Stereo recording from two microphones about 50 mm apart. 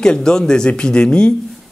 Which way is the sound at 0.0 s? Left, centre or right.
Centre.